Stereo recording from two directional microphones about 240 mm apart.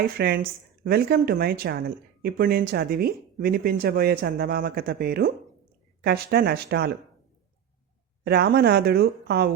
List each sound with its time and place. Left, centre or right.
0.2 s speech: right
8.2 s speech: right